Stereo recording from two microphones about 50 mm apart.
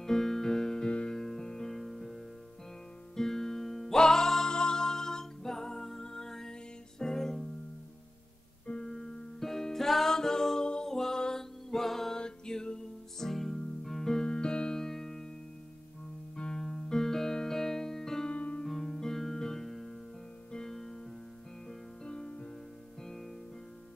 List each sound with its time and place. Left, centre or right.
0.0 s music: centre
1.1 s music: centre
8.6 s music: left
8.9 s music: centre
14.2 s electric piano: centre
16.3 s music: centre
18.3 s music: left
18.6 s music: centre
23.0 s music: centre